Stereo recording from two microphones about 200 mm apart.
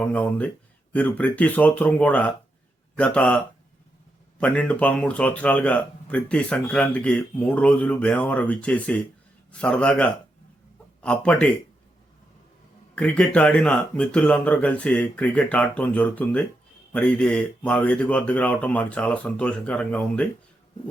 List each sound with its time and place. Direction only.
0.0 s a man's voice: 5° left (ahead or behind)
13.0 s speech: 5° left (ahead or behind)